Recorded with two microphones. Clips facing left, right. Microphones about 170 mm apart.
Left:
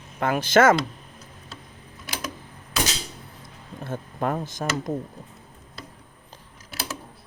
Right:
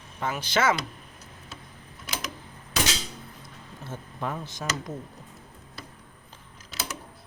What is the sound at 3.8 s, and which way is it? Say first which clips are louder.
Speech: left 6 dB; 55° left (ahead or behind).